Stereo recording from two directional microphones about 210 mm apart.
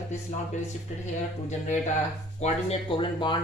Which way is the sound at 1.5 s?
35° left (ahead or behind).